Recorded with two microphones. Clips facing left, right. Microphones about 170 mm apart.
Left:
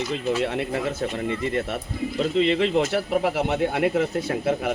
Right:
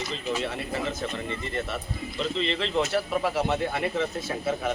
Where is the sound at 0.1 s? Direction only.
60° left (ahead or behind).